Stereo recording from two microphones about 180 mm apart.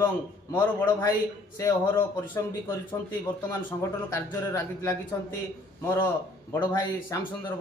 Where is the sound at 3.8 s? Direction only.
15° left (ahead or behind).